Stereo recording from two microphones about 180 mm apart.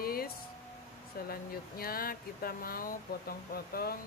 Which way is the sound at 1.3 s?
55° left (ahead or behind).